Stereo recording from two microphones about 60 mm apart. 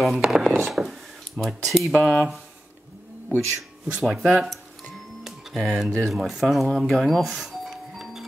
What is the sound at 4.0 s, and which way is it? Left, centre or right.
Speech, centre.